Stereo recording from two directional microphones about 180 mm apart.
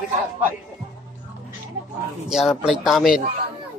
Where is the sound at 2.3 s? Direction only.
5° right (ahead or behind).